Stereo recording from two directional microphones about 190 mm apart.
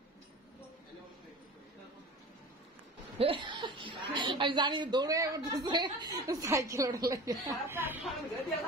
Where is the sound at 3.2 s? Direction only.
25° right (ahead or behind).